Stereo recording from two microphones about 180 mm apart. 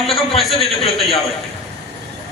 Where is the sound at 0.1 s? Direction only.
30° left (ahead or behind).